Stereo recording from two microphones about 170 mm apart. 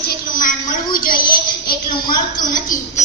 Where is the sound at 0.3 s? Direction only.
50° left (ahead or behind).